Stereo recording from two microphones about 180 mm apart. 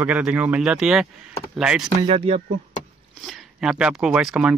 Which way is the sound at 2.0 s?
30° right (ahead or behind).